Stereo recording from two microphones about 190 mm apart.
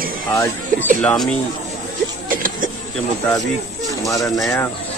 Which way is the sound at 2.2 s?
45° right (ahead or behind).